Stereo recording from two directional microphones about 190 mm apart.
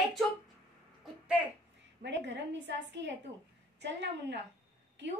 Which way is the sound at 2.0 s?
70° right (ahead or behind).